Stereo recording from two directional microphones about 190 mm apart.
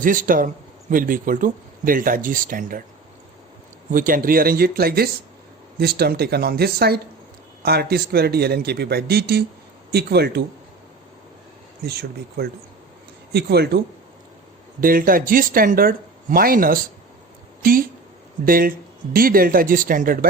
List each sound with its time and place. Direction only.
0.0 s speech: 45° right (ahead or behind)
3.9 s a man's voice: 50° right (ahead or behind)
11.9 s a man's voice: 55° right (ahead or behind)